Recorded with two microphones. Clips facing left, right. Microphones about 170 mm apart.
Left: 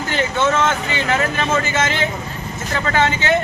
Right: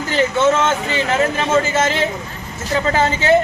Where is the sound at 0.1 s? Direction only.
30° right (ahead or behind).